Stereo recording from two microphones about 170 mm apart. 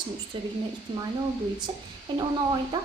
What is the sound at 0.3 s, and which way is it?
Speech, 30° right (ahead or behind).